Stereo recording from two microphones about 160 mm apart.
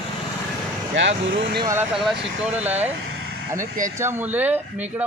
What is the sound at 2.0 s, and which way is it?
Speech, 5° right (ahead or behind).